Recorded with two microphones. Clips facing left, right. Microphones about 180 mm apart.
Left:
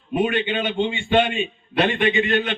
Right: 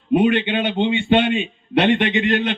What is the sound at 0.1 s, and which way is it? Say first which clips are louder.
A man's voice: right 5 dB; 70° right (ahead or behind).